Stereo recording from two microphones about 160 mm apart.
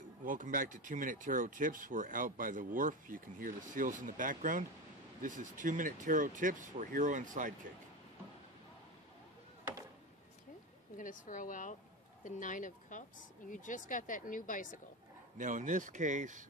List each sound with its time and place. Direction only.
0.2 s speech: 60° right (ahead or behind)
11.0 s speech: 55° left (ahead or behind)
15.3 s speech: 50° right (ahead or behind)